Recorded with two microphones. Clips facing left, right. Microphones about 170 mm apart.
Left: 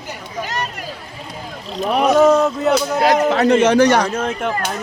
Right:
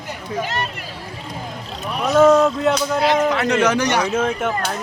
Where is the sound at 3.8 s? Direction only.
50° left (ahead or behind).